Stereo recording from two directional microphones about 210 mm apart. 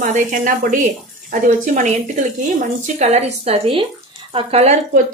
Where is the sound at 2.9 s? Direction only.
30° right (ahead or behind).